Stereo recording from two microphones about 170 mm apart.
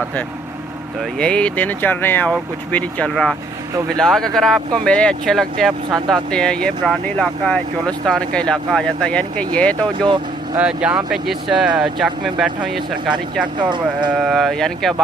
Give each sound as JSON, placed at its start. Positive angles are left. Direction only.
{"t": 1.2, "sound": "speech", "side_deg": 5}
{"t": 10.6, "sound": "speech", "side_deg": -5}
{"t": 13.7, "sound": "speech", "side_deg": -25}
{"t": 14.2, "sound": "speech", "side_deg": 0}